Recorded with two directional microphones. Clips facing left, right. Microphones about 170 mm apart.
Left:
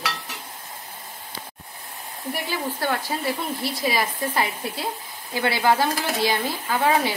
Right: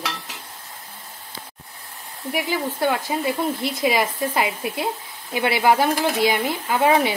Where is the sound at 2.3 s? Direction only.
15° right (ahead or behind).